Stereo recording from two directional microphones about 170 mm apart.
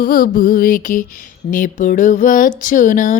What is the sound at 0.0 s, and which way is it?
Music, 55° left (ahead or behind).